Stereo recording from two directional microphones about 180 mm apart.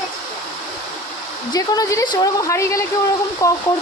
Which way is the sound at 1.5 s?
20° left (ahead or behind).